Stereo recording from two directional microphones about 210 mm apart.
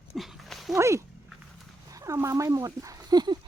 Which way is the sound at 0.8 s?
15° right (ahead or behind).